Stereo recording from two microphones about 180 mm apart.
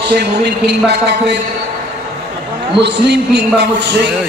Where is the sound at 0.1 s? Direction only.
70° right (ahead or behind).